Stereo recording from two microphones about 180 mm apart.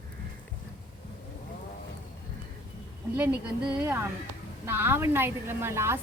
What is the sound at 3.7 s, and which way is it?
A woman's voice, 10° right (ahead or behind).